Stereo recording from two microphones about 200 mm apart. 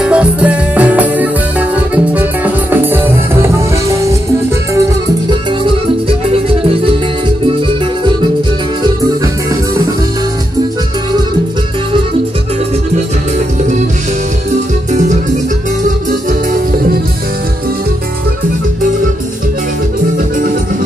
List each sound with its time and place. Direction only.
0.0 s music: 5° right (ahead or behind); by 6.1 s 25° right (ahead or behind)
14.5 s music: 35° right (ahead or behind)
16.1 s music: 45° right (ahead or behind)